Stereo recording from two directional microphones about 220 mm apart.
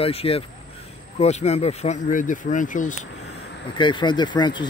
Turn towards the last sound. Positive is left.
turn(degrees=20)  # may be behind; listen again after turning